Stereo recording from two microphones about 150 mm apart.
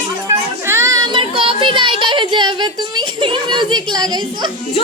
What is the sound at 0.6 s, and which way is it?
Child singing, 20° right (ahead or behind).